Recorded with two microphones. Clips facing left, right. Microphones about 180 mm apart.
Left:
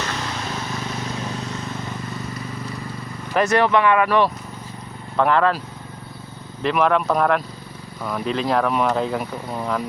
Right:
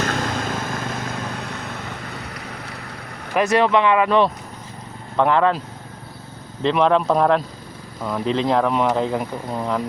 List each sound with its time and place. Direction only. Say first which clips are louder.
0.0 s vehicle: right 4 dB; 50° right (ahead or behind); by 3.3 s 70° right (ahead or behind)
3.3 s speech: right 1 dB; 15° right (ahead or behind)